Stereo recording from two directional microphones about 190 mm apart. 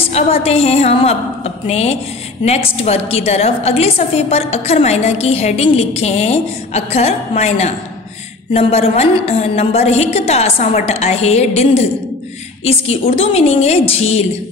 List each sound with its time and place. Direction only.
0.0 s a woman's voice: 30° left (ahead or behind)